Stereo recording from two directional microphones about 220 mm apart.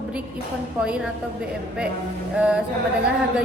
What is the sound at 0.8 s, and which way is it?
Speech, 5° right (ahead or behind).